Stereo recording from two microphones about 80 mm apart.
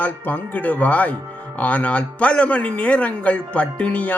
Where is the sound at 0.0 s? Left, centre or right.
Left.